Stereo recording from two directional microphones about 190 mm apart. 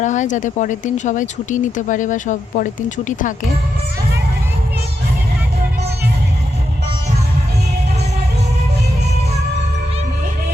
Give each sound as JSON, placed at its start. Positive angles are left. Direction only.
{"t": 0.0, "sound": "speech", "side_deg": 40}